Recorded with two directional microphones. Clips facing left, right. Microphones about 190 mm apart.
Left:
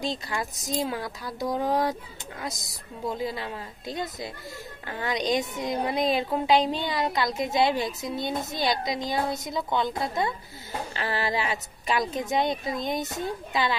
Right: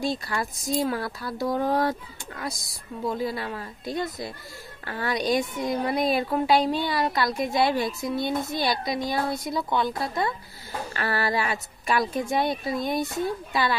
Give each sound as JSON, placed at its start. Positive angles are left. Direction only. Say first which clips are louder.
{"t": 0.0, "sound": "speech", "louder": "right 3 dB", "side_deg": 20}
{"t": 3.3, "sound": "a woman's voice", "louder": "right 2 dB", "side_deg": 20}